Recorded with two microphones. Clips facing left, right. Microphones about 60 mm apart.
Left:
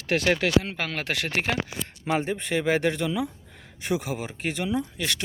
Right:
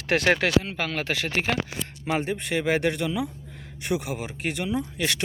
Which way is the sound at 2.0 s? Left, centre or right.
Centre.